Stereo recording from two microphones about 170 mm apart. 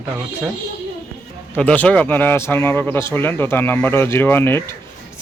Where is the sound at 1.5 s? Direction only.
10° left (ahead or behind).